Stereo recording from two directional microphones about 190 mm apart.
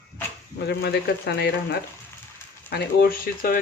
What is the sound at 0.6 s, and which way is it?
Speech, 60° left (ahead or behind).